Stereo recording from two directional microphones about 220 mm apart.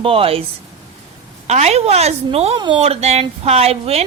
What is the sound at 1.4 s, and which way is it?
A woman's voice, 30° right (ahead or behind).